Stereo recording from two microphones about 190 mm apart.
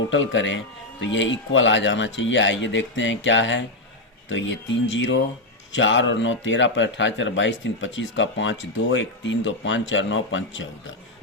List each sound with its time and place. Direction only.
0.1 s a man's voice: 75° left (ahead or behind)